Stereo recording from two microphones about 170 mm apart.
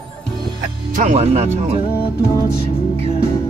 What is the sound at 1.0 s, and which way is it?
Speech, 45° right (ahead or behind).